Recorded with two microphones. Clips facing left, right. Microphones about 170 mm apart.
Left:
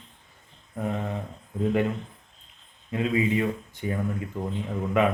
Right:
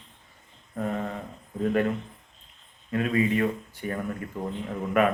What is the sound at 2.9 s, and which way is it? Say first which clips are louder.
A man's voice: even; 20° left (ahead or behind).